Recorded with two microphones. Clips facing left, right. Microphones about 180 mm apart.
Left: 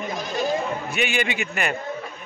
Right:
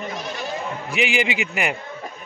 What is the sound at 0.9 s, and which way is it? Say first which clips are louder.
Speech: right 4 dB; 90° right.